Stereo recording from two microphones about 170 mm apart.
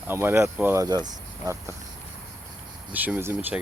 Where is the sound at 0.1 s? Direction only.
15° right (ahead or behind).